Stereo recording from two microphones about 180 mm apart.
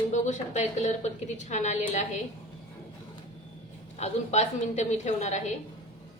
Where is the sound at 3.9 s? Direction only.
35° left (ahead or behind).